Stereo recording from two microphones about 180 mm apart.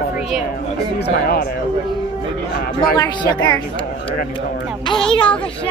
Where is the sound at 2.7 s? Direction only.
25° left (ahead or behind).